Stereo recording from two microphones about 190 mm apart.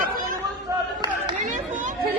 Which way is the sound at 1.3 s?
40° right (ahead or behind).